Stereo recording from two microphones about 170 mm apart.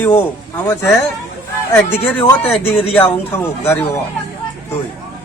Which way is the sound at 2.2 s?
15° left (ahead or behind).